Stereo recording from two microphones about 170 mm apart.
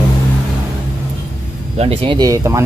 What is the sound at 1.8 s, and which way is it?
Speech, 35° right (ahead or behind).